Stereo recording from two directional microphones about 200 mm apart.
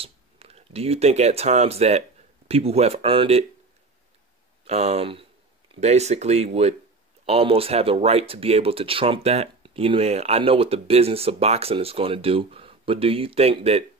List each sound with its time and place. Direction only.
0.0 s speech: 30° right (ahead or behind)
4.6 s speech: 30° right (ahead or behind)